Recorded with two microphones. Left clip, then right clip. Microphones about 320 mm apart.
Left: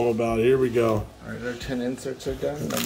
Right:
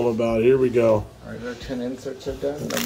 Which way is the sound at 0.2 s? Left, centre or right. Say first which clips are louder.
Right 3 dB; centre.